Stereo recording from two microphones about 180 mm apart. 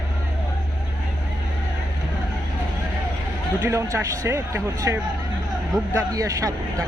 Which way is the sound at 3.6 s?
15° right (ahead or behind).